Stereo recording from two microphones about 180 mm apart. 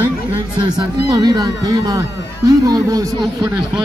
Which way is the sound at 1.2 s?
20° right (ahead or behind).